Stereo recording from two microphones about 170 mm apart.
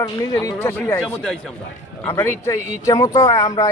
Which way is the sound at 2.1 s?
15° left (ahead or behind).